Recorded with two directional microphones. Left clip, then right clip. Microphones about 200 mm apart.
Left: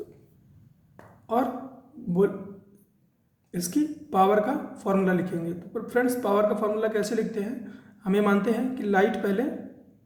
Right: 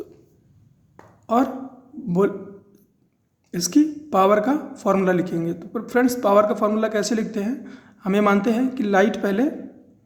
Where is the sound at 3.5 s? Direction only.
40° right (ahead or behind).